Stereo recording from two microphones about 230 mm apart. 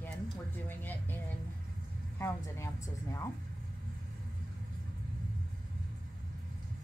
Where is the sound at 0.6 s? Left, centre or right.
Centre.